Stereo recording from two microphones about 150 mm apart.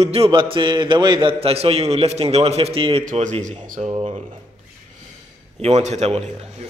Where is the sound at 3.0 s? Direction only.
50° right (ahead or behind).